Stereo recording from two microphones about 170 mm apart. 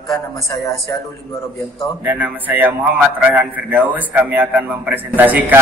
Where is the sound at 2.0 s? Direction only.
10° right (ahead or behind).